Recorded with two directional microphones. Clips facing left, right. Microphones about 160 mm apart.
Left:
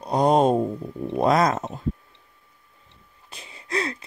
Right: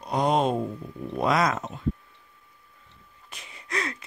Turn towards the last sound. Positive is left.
turn(degrees=30)  # may be behind; listen again after turning